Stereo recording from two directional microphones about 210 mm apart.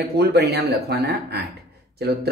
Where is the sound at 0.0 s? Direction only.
50° right (ahead or behind).